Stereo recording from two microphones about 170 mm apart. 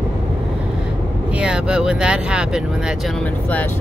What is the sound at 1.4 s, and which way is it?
Speech, 5° right (ahead or behind).